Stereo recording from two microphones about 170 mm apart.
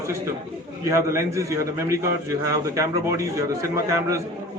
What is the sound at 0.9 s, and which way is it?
A man's voice, 15° right (ahead or behind).